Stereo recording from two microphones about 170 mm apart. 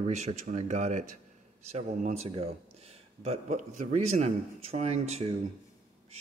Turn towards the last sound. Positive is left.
turn(degrees=-40)  # may be behind; listen again after turning